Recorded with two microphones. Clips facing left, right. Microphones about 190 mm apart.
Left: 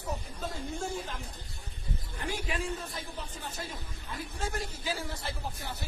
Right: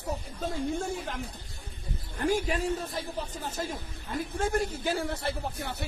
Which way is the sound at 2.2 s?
45° right (ahead or behind).